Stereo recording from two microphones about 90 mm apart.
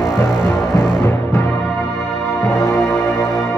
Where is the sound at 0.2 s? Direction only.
30° left (ahead or behind).